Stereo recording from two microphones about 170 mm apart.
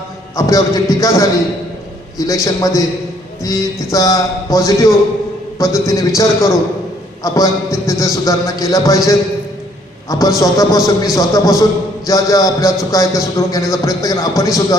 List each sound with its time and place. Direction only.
0.3 s a man's voice: 20° left (ahead or behind)
10.1 s a man's voice: 20° left (ahead or behind)